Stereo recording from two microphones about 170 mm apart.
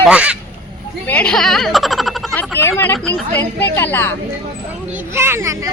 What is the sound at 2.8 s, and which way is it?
Speech, 15° left (ahead or behind).